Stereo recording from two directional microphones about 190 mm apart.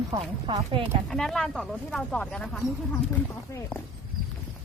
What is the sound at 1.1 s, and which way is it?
Speech, 5° left (ahead or behind).